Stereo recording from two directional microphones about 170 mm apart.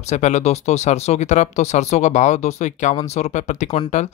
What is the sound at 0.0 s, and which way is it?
Speech, 40° left (ahead or behind).